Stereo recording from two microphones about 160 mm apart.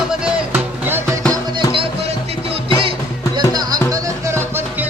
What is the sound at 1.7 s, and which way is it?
Music, 35° right (ahead or behind).